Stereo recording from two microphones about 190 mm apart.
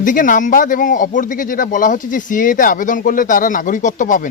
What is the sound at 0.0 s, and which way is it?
Speech, 45° left (ahead or behind).